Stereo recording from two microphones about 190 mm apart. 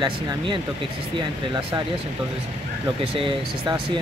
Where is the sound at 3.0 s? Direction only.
30° right (ahead or behind).